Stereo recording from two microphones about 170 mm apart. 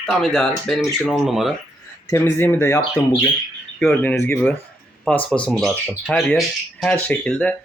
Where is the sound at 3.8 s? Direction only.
Centre (ahead or behind).